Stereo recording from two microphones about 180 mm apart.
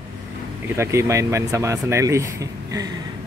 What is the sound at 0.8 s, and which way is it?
Speech, 15° right (ahead or behind).